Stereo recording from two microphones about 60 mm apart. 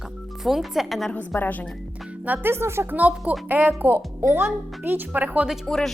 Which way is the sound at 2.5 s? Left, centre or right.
Right.